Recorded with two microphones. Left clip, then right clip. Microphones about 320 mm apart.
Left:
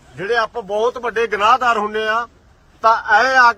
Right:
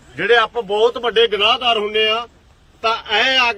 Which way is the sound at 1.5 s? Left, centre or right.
Centre.